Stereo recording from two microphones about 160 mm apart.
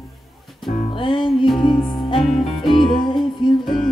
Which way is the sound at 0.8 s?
30° left (ahead or behind).